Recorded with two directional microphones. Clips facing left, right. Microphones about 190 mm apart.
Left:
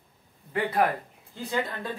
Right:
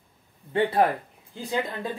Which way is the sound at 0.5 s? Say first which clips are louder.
Right 3 dB; 30° right (ahead or behind).